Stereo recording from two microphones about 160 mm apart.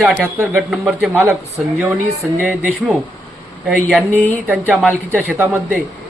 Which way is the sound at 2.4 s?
5° right (ahead or behind).